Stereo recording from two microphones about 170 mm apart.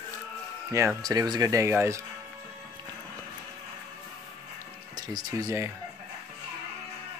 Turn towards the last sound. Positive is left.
turn(degrees=-20)  # may be behind; listen again after turning